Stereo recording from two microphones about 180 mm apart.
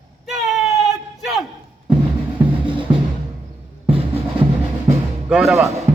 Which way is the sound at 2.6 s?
30° right (ahead or behind).